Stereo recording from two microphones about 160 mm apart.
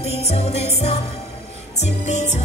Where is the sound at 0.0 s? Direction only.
40° left (ahead or behind).